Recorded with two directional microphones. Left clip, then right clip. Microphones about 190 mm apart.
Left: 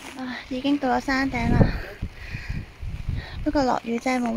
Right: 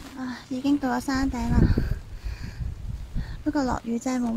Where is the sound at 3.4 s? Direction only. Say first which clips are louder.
Left 4 dB; 5° right (ahead or behind).